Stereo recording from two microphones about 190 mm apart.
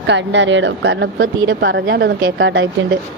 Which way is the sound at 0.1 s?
65° right (ahead or behind).